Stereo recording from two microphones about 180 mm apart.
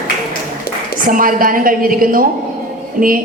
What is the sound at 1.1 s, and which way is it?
Speech, 50° right (ahead or behind).